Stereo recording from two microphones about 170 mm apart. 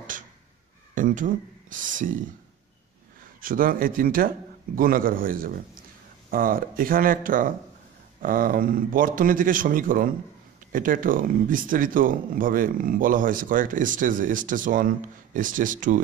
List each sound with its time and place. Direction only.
0.9 s speech: 50° right (ahead or behind)
3.3 s speech: 55° right (ahead or behind)